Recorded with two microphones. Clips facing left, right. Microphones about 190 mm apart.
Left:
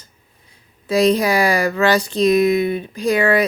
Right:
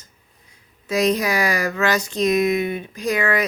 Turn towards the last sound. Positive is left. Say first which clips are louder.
# left 5 dB
turn(degrees=30)  # may be behind; listen again after turning